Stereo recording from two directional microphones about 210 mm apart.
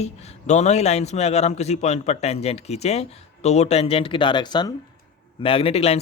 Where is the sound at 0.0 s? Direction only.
30° left (ahead or behind).